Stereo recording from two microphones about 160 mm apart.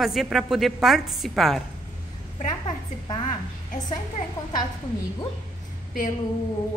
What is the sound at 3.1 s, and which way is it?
Speech, 30° left (ahead or behind).